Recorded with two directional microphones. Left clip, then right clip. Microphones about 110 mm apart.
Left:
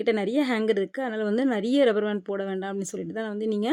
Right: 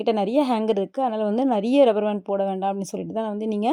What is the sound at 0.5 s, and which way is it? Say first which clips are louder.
Speech: right 2 dB; 35° right (ahead or behind).